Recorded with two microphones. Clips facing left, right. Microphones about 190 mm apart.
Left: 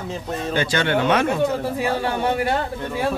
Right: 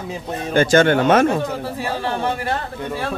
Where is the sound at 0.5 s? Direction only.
45° right (ahead or behind).